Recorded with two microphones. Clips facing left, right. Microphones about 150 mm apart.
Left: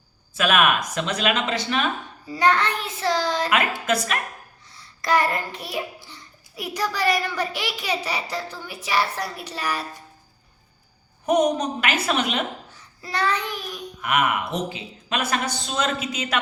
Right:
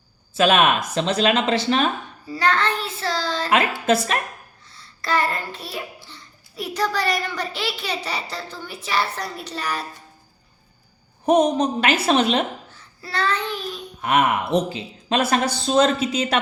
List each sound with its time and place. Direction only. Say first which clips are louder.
0.3 s speech: right 3 dB; 30° right (ahead or behind)
2.2 s a child's voice: left 1 dB; 15° left (ahead or behind)
3.8 s a woman's voice: right 4 dB; 30° right (ahead or behind)
4.7 s a child's voice: left 2 dB; 15° left (ahead or behind)
11.3 s speech: right 3 dB; 30° right (ahead or behind)
12.7 s babbling: even; 15° left (ahead or behind)
14.0 s speech: right 3 dB; 30° right (ahead or behind)